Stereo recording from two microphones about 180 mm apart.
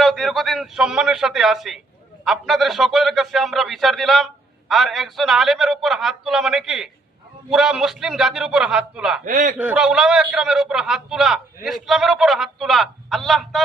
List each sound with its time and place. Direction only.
0.0 s a man's voice: centre (ahead or behind)
9.2 s a man's voice: 45° right (ahead or behind)
9.6 s a man's voice: 5° right (ahead or behind)